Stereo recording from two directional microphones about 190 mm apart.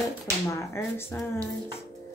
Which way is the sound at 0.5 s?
15° left (ahead or behind).